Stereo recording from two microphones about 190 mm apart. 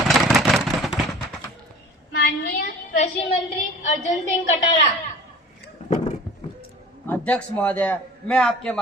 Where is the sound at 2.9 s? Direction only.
35° left (ahead or behind).